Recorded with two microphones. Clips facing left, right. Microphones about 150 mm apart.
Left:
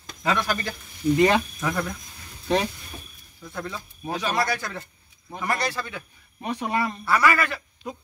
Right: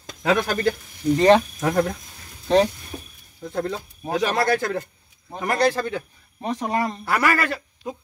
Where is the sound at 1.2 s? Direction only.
35° right (ahead or behind).